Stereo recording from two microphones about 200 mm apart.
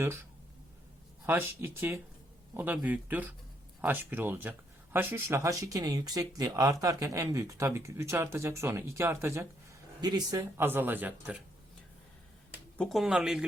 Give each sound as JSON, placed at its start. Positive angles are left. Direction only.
{"t": 1.3, "sound": "speech", "side_deg": -10}
{"t": 12.7, "sound": "speech", "side_deg": 5}